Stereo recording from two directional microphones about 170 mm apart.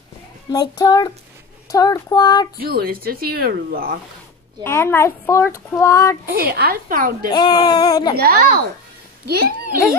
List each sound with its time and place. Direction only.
0.5 s a sound: 25° left (ahead or behind)
2.6 s speech: 60° right (ahead or behind)
4.6 s speech: 15° left (ahead or behind)
6.3 s speech: 60° right (ahead or behind)
7.2 s a sound: 25° left (ahead or behind)
8.2 s a child's voice: 60° right (ahead or behind)